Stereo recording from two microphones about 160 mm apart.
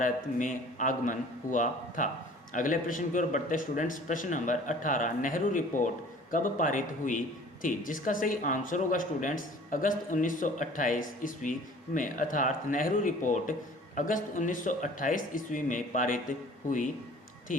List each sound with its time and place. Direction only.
0.0 s a man's voice: 55° left (ahead or behind)